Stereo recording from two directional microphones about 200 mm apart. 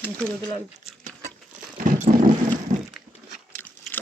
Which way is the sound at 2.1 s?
40° right (ahead or behind).